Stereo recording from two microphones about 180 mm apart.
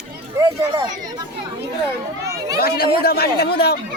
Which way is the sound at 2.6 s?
60° left (ahead or behind).